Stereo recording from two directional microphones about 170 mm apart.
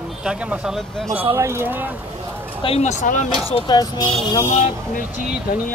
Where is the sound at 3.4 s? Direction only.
35° left (ahead or behind).